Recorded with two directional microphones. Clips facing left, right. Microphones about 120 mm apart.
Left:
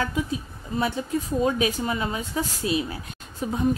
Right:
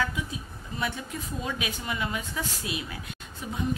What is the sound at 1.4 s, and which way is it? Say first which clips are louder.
A woman's voice: left 9 dB; 40° left (ahead or behind).